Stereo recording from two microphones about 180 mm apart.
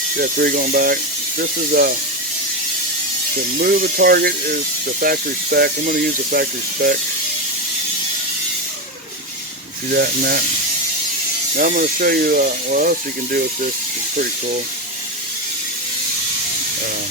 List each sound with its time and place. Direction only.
0.2 s speech: 55° right (ahead or behind)
3.6 s speech: 55° right (ahead or behind)
9.9 s speech: 55° right (ahead or behind)
11.5 s speech: 50° right (ahead or behind)